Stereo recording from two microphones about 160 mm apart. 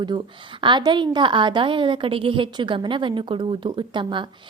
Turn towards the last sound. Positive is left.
turn(degrees=-30)  # may be behind; listen again after turning